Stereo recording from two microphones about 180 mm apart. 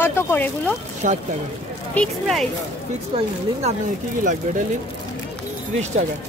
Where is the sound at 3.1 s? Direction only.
35° right (ahead or behind).